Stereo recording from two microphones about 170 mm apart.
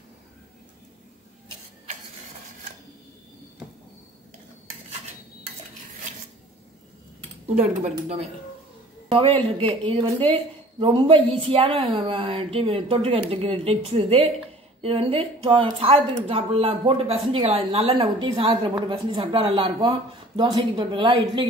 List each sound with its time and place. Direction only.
7.4 s speech: 40° right (ahead or behind)
9.1 s speech: 30° right (ahead or behind)